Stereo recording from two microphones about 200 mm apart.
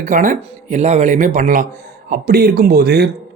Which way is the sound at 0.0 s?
40° right (ahead or behind).